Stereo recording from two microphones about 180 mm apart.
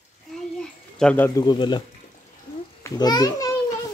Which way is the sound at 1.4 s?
25° left (ahead or behind).